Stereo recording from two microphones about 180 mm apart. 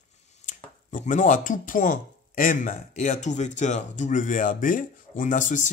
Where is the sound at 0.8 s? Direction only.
45° left (ahead or behind).